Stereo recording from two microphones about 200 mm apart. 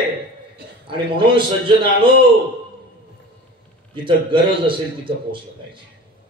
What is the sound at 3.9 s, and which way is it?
A man's voice, 25° right (ahead or behind).